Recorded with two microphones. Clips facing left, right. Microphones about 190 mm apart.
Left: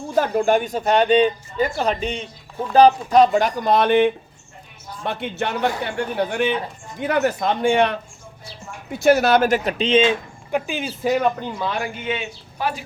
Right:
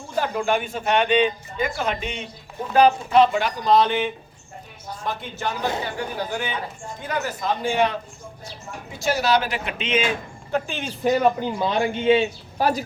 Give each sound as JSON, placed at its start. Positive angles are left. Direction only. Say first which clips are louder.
{"t": 0.2, "sound": "speech", "louder": "left 5 dB", "side_deg": 45}
{"t": 10.5, "sound": "speech", "louder": "left 2 dB", "side_deg": 5}
{"t": 11.6, "sound": "speech", "louder": "right 6 dB", "side_deg": -25}